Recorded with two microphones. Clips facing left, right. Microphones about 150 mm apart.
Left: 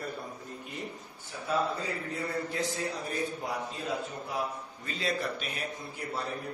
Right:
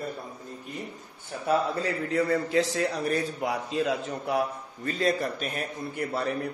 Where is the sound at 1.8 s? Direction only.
90° right.